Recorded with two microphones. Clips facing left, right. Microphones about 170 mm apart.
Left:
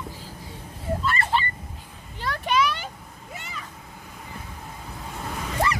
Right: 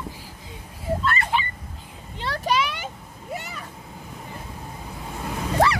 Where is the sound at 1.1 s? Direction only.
Centre (ahead or behind).